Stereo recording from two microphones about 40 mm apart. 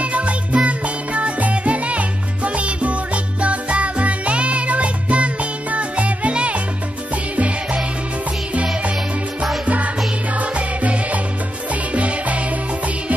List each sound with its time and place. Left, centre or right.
0.0 s music: right
10.3 s music: right